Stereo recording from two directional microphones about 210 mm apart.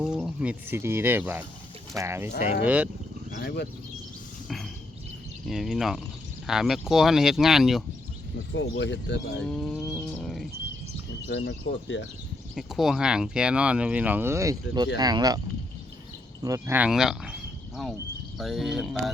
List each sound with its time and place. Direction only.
0.0 s speech: 5° right (ahead or behind)
3.3 s speech: 50° left (ahead or behind)
5.5 s speech: centre (ahead or behind)
8.5 s speech: 65° left (ahead or behind)
9.4 s speech: centre (ahead or behind)
11.3 s speech: 55° left (ahead or behind)
12.5 s speech: centre (ahead or behind); by 15.4 s 20° right (ahead or behind)
16.4 s speech: 15° right (ahead or behind)